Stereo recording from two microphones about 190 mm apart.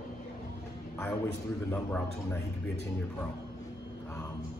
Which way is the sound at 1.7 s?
10° left (ahead or behind).